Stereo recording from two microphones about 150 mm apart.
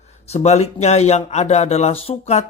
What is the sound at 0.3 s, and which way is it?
Speech, 45° left (ahead or behind).